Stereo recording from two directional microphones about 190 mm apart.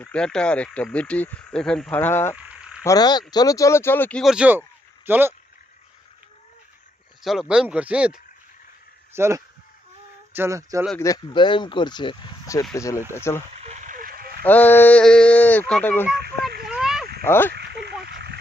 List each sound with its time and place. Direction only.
0.0 s speech: 5° left (ahead or behind)
2.3 s frog: 5° right (ahead or behind)
2.8 s speech: 20° left (ahead or behind)
4.2 s speech: 5° right (ahead or behind)
7.2 s speech: centre (ahead or behind)
11.0 s speech: 20° left (ahead or behind)
13.6 s a sound: 35° right (ahead or behind)
14.4 s speech: 10° left (ahead or behind)
16.6 s a sound: 5° right (ahead or behind)
17.2 s speech: 10° left (ahead or behind)
17.5 s frog: 60° right (ahead or behind)
18.0 s a sound: 60° right (ahead or behind)